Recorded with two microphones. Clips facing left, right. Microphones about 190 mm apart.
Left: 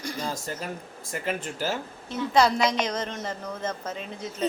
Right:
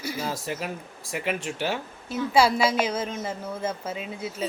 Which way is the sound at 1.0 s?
90° right.